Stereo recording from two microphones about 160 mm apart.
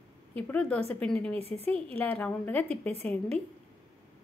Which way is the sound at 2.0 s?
10° left (ahead or behind).